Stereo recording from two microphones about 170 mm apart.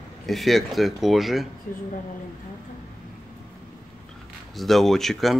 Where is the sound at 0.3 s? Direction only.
Centre (ahead or behind).